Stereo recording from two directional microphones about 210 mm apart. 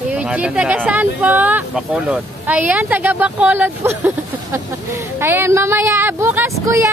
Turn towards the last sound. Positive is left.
turn(degrees=-15)  # may be behind; listen again after turning